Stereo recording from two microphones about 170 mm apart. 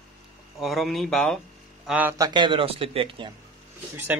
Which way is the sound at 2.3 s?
25° right (ahead or behind).